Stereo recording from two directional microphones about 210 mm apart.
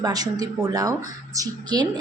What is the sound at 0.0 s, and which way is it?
A woman's voice, 20° right (ahead or behind).